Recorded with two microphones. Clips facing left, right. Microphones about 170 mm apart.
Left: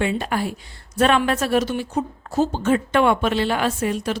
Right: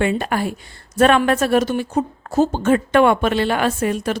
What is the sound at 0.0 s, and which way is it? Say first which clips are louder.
A woman's voice: right 3 dB; 55° right (ahead or behind).